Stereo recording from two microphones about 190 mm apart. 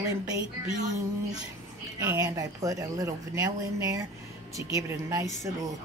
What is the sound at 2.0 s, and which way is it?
Speech, 15° right (ahead or behind).